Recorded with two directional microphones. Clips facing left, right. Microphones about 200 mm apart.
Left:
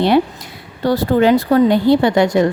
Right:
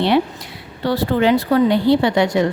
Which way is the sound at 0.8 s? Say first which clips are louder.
Left 3 dB; 45° left (ahead or behind).